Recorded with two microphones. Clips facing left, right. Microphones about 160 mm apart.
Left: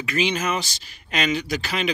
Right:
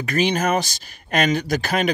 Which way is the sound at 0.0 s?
45° right (ahead or behind).